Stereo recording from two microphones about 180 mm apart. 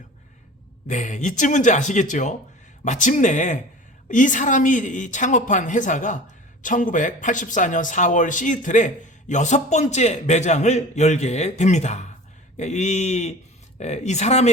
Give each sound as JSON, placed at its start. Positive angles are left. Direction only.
{"t": 0.9, "sound": "a man's voice", "side_deg": 40}